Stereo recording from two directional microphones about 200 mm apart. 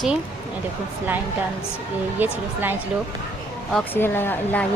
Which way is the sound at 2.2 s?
10° right (ahead or behind).